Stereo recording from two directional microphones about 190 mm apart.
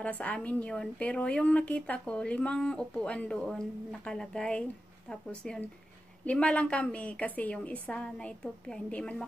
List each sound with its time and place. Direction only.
0.0 s a woman's voice: 5° left (ahead or behind)